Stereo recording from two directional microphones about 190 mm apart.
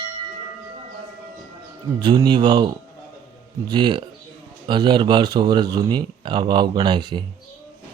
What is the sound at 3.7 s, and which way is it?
Speech, 25° right (ahead or behind).